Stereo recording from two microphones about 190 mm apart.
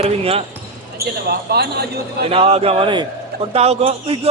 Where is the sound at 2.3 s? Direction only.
30° right (ahead or behind).